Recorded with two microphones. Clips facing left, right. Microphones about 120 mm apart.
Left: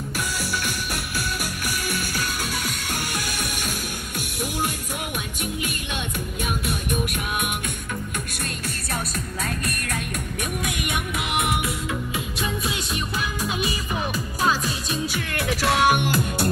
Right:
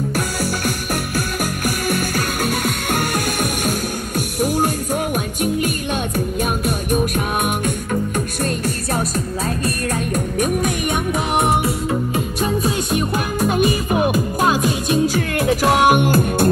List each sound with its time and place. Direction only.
0.4 s music: 45° right (ahead or behind)
4.4 s music: 45° right (ahead or behind)
10.1 s music: 40° right (ahead or behind)
15.9 s music: 50° right (ahead or behind)